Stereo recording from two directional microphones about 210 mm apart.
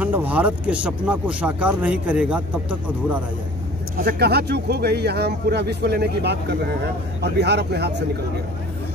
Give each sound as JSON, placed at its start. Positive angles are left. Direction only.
{"t": 0.0, "sound": "speech", "side_deg": -10}
{"t": 3.9, "sound": "speech", "side_deg": -45}
{"t": 7.3, "sound": "speech", "side_deg": -55}